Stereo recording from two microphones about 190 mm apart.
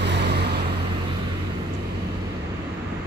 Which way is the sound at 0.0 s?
65° right (ahead or behind).